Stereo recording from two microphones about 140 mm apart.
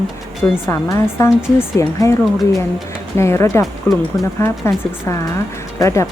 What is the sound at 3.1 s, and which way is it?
Speech, 20° left (ahead or behind).